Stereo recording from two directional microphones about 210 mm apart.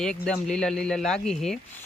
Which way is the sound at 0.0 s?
5° left (ahead or behind).